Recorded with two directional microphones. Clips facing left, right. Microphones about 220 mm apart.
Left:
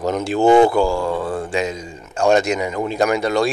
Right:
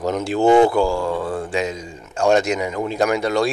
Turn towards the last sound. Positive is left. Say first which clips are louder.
# left 1 dB
turn(degrees=25)  # may be behind; listen again after turning